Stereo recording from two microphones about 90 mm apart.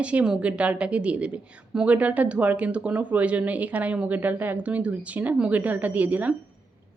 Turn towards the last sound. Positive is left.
turn(degrees=-20)  # may be behind; listen again after turning